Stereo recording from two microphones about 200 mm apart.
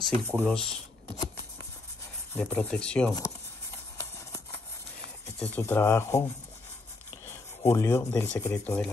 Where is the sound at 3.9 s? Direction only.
15° left (ahead or behind).